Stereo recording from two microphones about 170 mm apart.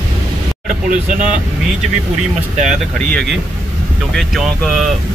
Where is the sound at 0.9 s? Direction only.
45° right (ahead or behind).